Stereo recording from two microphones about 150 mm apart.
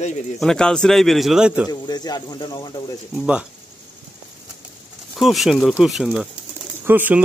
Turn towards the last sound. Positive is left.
turn(degrees=-10)  # may be behind; listen again after turning